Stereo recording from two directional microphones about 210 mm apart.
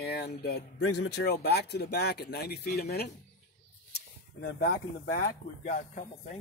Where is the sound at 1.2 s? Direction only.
50° left (ahead or behind).